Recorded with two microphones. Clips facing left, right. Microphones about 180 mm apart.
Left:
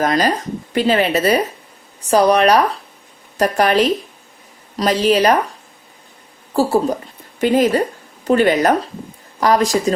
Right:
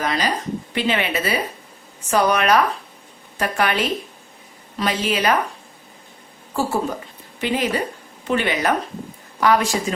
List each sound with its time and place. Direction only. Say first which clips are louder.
0.0 s speech: left 6 dB; 45° left (ahead or behind)
6.5 s a woman's voice: left 7 dB; 35° left (ahead or behind)